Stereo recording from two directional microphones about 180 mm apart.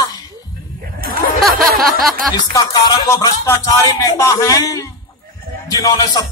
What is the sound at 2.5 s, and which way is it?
A man's voice, 20° left (ahead or behind).